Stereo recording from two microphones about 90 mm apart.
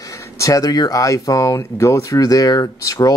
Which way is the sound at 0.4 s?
40° left (ahead or behind).